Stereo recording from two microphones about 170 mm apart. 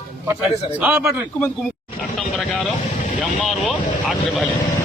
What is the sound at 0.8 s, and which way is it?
Speech, 15° right (ahead or behind).